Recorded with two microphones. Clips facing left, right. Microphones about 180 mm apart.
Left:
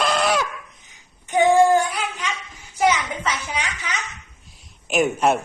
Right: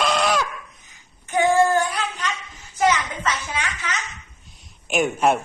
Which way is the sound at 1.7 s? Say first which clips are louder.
Left 2 dB; 10° left (ahead or behind).